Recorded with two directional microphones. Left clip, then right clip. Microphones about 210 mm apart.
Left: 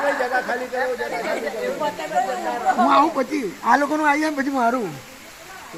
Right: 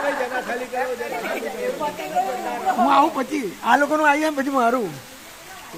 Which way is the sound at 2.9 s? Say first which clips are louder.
Even; centre (ahead or behind).